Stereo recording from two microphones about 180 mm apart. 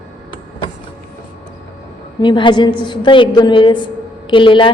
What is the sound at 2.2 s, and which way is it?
A woman's voice, 25° left (ahead or behind).